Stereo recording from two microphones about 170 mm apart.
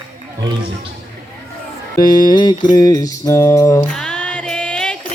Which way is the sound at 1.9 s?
25° left (ahead or behind).